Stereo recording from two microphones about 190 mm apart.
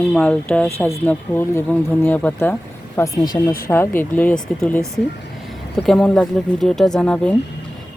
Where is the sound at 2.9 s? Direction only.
20° left (ahead or behind).